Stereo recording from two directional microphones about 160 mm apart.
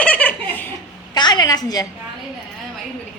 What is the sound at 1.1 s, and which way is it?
Speech, 25° left (ahead or behind).